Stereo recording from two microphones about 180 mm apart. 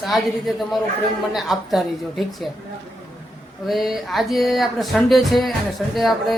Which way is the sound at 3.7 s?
Centre (ahead or behind).